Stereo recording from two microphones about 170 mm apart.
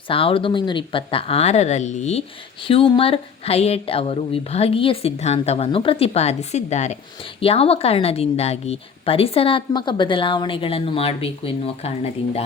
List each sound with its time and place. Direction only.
0.1 s a woman's voice: 30° left (ahead or behind)
2.6 s a woman's voice: 30° left (ahead or behind)